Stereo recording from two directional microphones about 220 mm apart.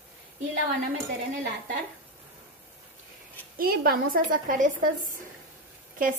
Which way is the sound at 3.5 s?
45° right (ahead or behind).